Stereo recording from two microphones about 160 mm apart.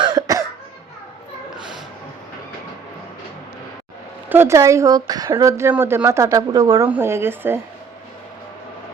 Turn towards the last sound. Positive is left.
turn(degrees=-15)  # may be behind; listen again after turning